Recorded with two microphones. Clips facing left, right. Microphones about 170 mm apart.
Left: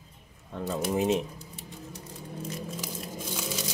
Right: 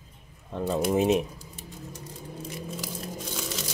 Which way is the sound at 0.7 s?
20° right (ahead or behind).